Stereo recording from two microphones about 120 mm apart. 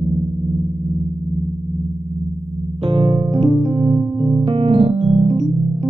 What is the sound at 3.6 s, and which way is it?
Keyboard, 45° right (ahead or behind).